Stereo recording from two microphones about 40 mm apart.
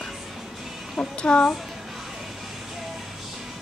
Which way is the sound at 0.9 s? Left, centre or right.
Left.